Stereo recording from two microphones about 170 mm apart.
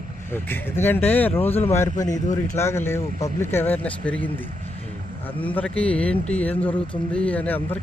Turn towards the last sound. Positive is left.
turn(degrees=10)  # may be behind; listen again after turning